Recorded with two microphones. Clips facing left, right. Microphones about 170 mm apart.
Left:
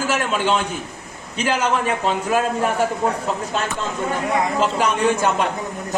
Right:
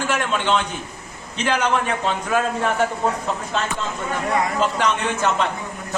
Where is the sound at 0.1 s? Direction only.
5° left (ahead or behind).